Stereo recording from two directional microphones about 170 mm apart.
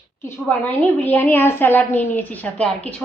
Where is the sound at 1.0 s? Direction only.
10° left (ahead or behind).